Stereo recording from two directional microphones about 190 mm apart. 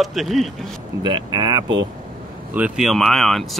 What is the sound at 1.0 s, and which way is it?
Speech, 25° right (ahead or behind).